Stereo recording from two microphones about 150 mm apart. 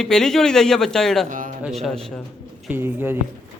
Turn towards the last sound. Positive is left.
turn(degrees=-15)  # may be behind; listen again after turning